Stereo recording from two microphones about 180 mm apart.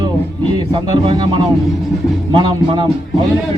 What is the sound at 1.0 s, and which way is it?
Speech, 30° right (ahead or behind).